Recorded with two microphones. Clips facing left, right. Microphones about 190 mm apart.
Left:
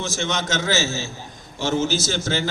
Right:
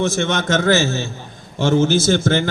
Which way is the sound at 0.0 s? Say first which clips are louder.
Right 7 dB; 55° right (ahead or behind).